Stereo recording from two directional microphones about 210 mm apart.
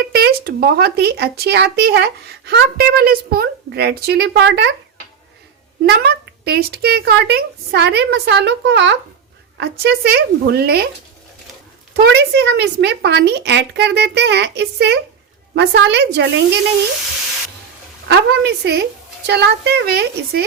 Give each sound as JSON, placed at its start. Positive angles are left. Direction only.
{"t": 0.1, "sound": "a child's voice", "side_deg": -50}
{"t": 5.8, "sound": "a child's voice", "side_deg": -50}
{"t": 11.9, "sound": "a child's voice", "side_deg": -50}
{"t": 18.1, "sound": "a child's voice", "side_deg": -50}